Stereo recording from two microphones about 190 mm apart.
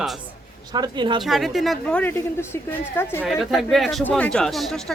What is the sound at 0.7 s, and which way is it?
Speech, 25° right (ahead or behind).